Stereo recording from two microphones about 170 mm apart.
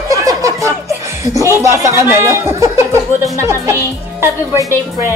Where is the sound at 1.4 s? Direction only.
15° right (ahead or behind).